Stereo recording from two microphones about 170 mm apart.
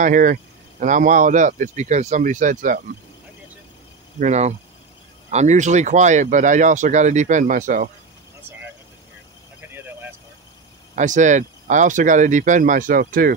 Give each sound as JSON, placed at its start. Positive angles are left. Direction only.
{"t": 0.0, "sound": "speech", "side_deg": -50}
{"t": 4.2, "sound": "speech", "side_deg": -45}
{"t": 11.0, "sound": "speech", "side_deg": -45}